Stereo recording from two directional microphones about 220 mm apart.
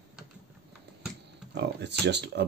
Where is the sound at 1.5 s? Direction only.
50° right (ahead or behind).